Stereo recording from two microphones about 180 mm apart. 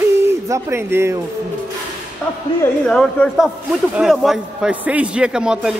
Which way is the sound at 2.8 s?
5° left (ahead or behind).